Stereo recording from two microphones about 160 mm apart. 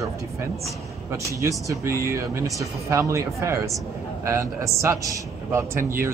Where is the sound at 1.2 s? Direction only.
20° right (ahead or behind).